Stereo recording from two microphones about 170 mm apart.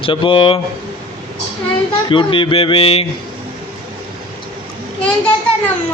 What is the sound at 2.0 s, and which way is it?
Speech, 30° left (ahead or behind).